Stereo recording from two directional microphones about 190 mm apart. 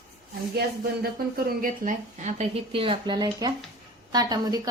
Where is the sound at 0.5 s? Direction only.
55° right (ahead or behind).